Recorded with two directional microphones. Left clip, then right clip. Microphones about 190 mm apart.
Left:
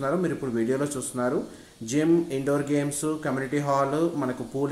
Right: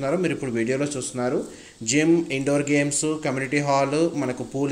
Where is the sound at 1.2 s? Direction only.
30° right (ahead or behind).